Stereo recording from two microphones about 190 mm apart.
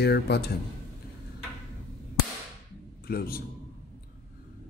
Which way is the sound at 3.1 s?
55° left (ahead or behind).